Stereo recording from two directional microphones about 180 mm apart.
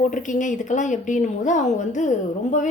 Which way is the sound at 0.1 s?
45° left (ahead or behind).